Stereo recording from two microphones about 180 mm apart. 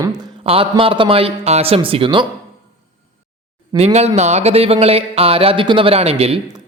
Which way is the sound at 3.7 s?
35° right (ahead or behind).